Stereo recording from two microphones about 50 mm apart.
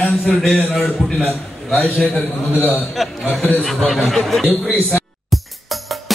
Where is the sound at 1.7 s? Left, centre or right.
Left.